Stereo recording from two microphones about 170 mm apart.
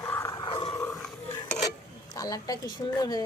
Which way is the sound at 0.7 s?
15° left (ahead or behind).